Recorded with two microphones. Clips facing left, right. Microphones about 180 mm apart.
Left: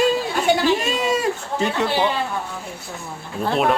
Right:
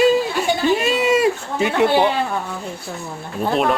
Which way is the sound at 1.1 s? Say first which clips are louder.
Right 5 dB; 10° right (ahead or behind).